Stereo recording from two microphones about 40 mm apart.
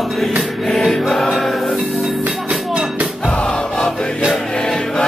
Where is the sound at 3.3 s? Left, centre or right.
Left.